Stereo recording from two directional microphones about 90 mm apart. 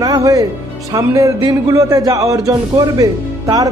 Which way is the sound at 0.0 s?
40° right (ahead or behind).